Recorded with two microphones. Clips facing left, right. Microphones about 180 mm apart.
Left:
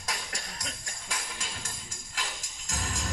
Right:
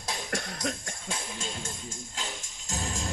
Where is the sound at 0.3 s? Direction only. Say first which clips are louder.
Right 9 dB; 55° right (ahead or behind).